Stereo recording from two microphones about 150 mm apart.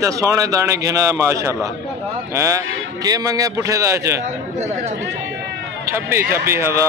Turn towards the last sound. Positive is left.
turn(degrees=-15)  # may be behind; listen again after turning